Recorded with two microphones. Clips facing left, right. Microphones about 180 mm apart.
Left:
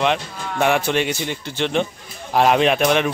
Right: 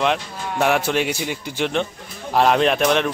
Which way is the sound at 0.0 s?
Centre (ahead or behind).